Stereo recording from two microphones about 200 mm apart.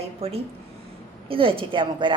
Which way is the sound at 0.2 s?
30° right (ahead or behind).